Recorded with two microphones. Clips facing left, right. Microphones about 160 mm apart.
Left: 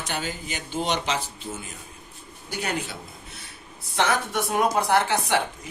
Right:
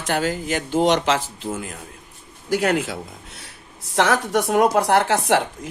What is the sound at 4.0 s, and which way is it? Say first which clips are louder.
Speech: right 5 dB; 80° right.